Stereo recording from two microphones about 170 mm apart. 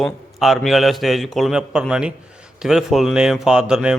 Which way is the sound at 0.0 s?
Centre (ahead or behind).